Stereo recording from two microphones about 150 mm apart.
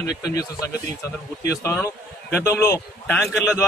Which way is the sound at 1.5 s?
20° left (ahead or behind).